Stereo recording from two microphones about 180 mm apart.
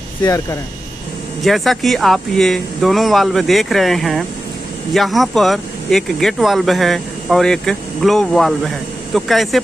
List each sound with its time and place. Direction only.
0.2 s speech: 20° left (ahead or behind)
1.4 s speech: centre (ahead or behind)